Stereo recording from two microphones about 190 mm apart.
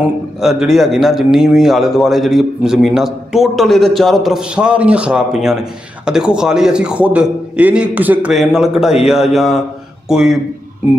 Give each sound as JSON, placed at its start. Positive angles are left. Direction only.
{"t": 0.4, "sound": "a man's voice", "side_deg": 0}